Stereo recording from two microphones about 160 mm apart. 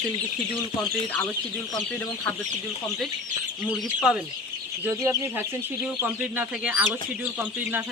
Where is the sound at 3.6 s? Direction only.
5° right (ahead or behind).